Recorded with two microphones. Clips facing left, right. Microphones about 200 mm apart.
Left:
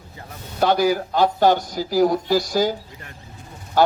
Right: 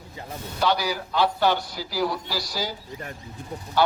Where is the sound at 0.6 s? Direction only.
50° left (ahead or behind).